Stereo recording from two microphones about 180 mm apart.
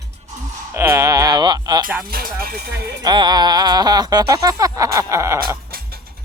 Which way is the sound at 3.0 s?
25° right (ahead or behind).